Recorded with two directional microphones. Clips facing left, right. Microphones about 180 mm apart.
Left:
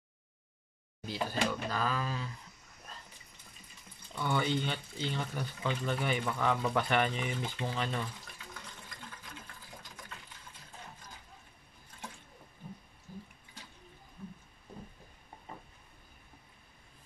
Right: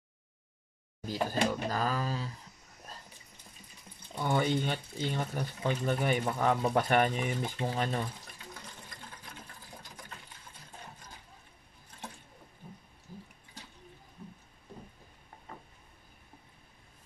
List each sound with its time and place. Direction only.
1.0 s speech: 45° right (ahead or behind)
4.1 s speech: 40° right (ahead or behind)